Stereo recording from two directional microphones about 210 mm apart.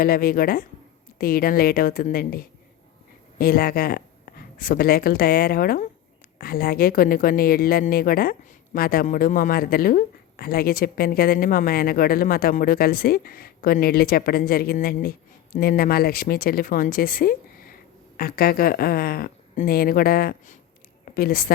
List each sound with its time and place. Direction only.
0.0 s a woman's voice: 45° left (ahead or behind)